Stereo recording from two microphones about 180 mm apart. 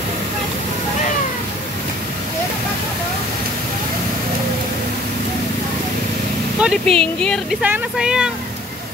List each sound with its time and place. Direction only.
6.6 s speech: centre (ahead or behind)
7.6 s speech: 5° right (ahead or behind)